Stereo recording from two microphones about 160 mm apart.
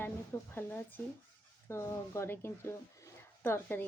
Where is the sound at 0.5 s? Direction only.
10° left (ahead or behind).